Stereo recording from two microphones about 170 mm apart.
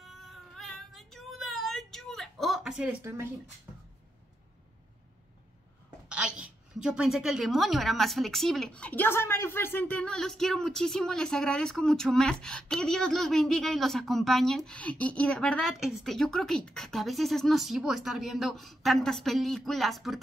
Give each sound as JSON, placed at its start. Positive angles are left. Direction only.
{"t": 0.0, "sound": "cat", "side_deg": 0}
{"t": 3.0, "sound": "speech", "side_deg": -15}
{"t": 6.0, "sound": "a woman's voice", "side_deg": -5}